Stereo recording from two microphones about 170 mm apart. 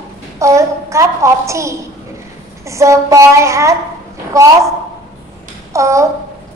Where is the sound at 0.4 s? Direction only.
20° right (ahead or behind).